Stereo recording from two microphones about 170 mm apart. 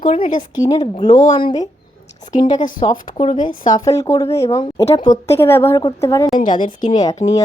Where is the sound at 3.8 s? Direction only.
20° left (ahead or behind).